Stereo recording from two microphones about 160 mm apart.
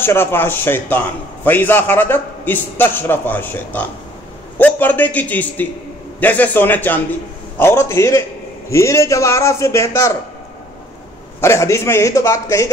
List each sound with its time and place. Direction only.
0.0 s a man's voice: 15° left (ahead or behind)
11.4 s a man's voice: 15° left (ahead or behind)